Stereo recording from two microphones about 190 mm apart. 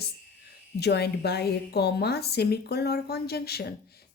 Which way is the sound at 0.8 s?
60° left (ahead or behind).